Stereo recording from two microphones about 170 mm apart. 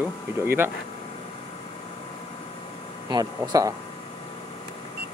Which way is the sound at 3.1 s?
20° right (ahead or behind).